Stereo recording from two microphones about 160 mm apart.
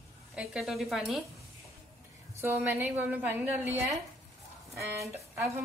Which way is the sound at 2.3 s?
15° right (ahead or behind).